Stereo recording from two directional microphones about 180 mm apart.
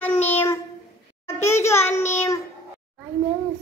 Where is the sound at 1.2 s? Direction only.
15° left (ahead or behind).